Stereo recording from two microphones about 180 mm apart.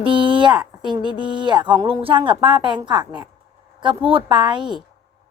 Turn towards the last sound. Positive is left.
turn(degrees=-25)  # may be behind; listen again after turning